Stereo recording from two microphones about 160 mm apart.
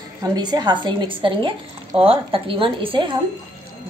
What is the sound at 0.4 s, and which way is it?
A woman's voice, 25° right (ahead or behind).